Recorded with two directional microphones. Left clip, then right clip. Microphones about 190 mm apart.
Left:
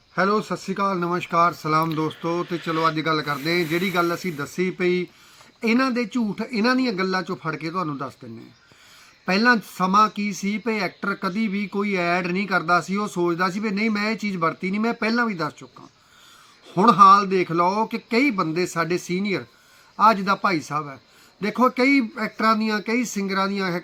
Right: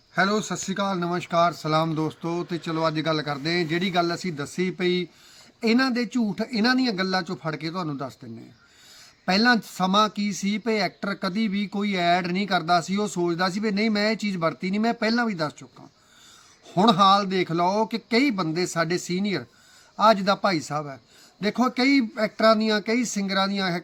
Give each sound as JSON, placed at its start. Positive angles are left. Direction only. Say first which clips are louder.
{"t": 0.2, "sound": "speech", "louder": "left 2 dB", "side_deg": -35}
{"t": 9.2, "sound": "speech", "louder": "left 2 dB", "side_deg": -35}
{"t": 16.7, "sound": "speech", "louder": "left 5 dB", "side_deg": -35}